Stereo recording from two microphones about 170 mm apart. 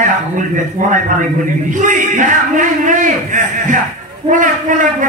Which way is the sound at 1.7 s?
50° right (ahead or behind).